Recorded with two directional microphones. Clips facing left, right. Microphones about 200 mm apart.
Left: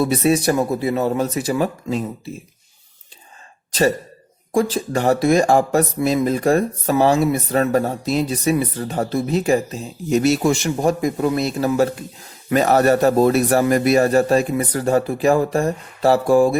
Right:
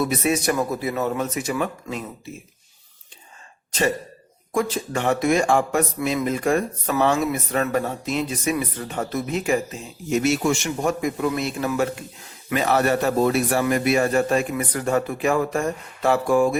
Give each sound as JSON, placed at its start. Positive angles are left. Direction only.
{"t": 0.0, "sound": "speech", "side_deg": 30}
{"t": 3.7, "sound": "speech", "side_deg": 35}